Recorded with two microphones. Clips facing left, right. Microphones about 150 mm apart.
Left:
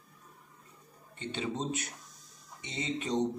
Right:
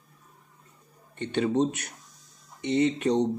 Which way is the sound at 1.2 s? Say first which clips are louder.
Right 11 dB; 65° right (ahead or behind).